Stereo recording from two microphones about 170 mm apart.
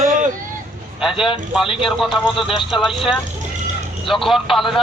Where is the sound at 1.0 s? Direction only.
Centre (ahead or behind).